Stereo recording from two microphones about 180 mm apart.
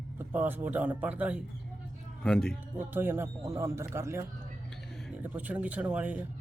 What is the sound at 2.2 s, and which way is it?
Speech, 5° left (ahead or behind).